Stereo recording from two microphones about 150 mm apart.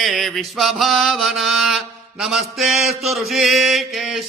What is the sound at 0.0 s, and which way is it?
Mantra, centre (ahead or behind).